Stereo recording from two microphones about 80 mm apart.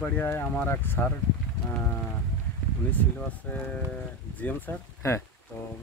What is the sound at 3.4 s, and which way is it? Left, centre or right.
Speech, centre.